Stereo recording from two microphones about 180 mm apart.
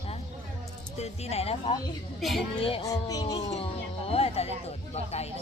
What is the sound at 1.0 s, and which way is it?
Speech, 35° left (ahead or behind).